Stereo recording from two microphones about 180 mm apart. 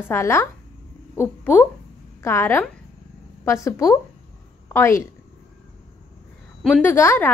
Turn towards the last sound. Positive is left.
turn(degrees=15)  # may be behind; listen again after turning